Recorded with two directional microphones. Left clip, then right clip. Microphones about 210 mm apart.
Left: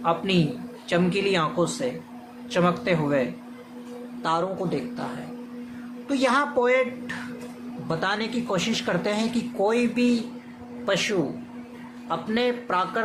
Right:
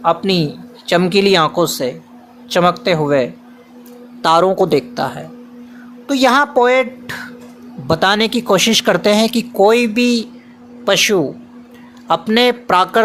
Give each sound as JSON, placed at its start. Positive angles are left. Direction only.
{"t": 0.0, "sound": "speech", "side_deg": -45}
{"t": 6.1, "sound": "speech", "side_deg": -50}
{"t": 7.9, "sound": "speech", "side_deg": -50}